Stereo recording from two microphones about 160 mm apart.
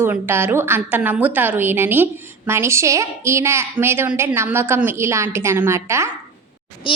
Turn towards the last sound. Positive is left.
turn(degrees=35)  # may be behind; listen again after turning